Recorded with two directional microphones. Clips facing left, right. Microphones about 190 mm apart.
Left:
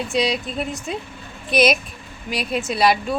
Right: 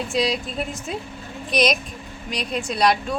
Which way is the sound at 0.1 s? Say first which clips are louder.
Left 1 dB; centre (ahead or behind).